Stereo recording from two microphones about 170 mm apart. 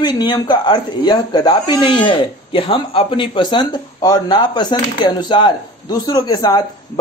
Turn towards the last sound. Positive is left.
turn(degrees=20)  # may be behind; listen again after turning